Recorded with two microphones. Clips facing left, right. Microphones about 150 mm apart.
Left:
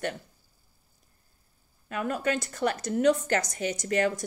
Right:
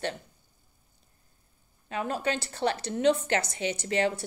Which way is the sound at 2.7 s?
40° left (ahead or behind).